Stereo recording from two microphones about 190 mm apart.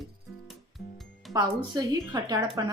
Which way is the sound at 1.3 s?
20° right (ahead or behind).